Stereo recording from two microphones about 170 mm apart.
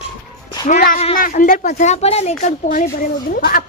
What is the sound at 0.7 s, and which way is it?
Speech, 55° left (ahead or behind).